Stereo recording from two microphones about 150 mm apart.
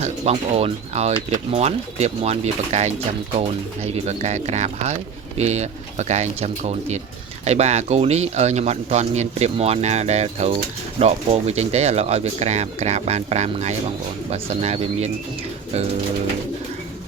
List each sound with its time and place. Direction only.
0.0 s speech: 45° right (ahead or behind)